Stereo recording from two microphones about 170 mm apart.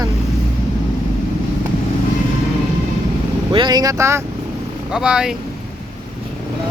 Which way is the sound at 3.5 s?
25° right (ahead or behind).